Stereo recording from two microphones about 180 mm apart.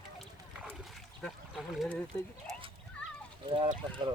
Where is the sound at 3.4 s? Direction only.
30° right (ahead or behind).